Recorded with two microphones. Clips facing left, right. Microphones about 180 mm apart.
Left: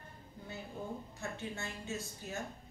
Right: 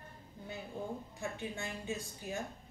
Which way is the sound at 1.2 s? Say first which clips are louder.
Right 2 dB; 15° right (ahead or behind).